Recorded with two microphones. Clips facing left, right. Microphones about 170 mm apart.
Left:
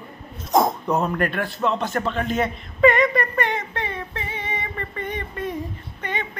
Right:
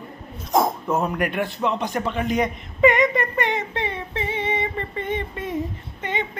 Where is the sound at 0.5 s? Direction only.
5° right (ahead or behind); by 6.3 s 20° right (ahead or behind).